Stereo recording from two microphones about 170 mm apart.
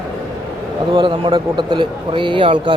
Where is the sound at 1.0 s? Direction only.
25° right (ahead or behind).